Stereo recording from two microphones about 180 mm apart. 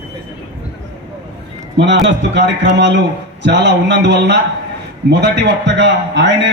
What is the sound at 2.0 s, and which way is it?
A man's voice, 75° right (ahead or behind).